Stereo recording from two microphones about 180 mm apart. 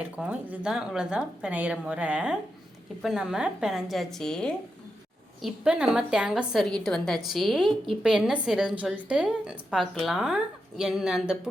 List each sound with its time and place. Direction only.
0.0 s a woman's voice: 5° right (ahead or behind)